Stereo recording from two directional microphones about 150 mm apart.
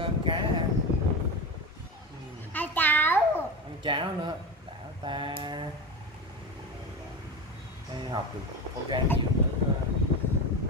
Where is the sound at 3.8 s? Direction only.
35° right (ahead or behind).